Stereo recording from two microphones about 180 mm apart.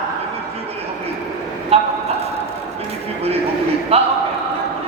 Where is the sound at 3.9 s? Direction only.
35° right (ahead or behind).